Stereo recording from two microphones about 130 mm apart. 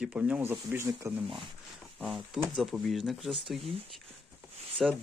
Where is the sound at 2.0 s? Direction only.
Centre (ahead or behind).